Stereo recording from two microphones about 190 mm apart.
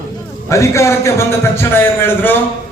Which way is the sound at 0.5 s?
15° left (ahead or behind).